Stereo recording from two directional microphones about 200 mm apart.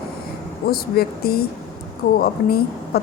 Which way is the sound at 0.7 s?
50° left (ahead or behind).